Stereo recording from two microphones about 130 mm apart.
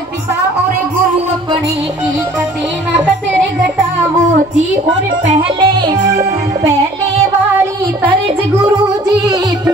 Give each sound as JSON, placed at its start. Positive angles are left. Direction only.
{"t": 5.6, "sound": "music", "side_deg": -35}